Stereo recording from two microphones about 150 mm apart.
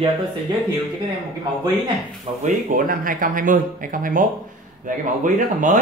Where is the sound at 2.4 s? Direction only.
70° right (ahead or behind).